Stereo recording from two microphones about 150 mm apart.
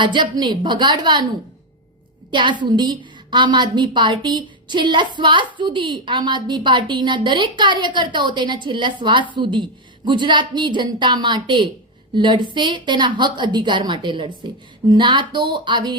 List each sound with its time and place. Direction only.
0.0 s a woman's voice: 30° right (ahead or behind)
2.3 s a woman's voice: 30° right (ahead or behind)